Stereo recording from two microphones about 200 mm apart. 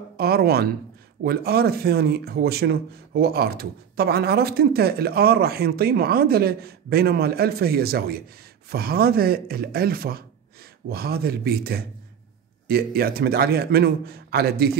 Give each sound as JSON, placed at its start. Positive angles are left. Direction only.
{"t": 0.2, "sound": "speech", "side_deg": -50}